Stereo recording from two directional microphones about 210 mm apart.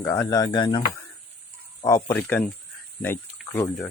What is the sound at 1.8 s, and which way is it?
Speech, 15° left (ahead or behind).